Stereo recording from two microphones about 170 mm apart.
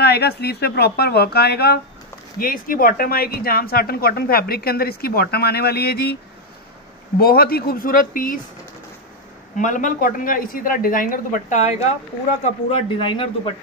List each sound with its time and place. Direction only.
0.0 s speech: 70° left (ahead or behind)
2.3 s speech: 55° left (ahead or behind)
7.2 s speech: 60° left (ahead or behind)
9.6 s a woman's voice: 50° left (ahead or behind)
12.7 s a man's voice: 30° left (ahead or behind)